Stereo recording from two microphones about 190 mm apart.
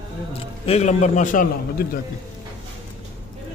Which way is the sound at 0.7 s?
35° left (ahead or behind).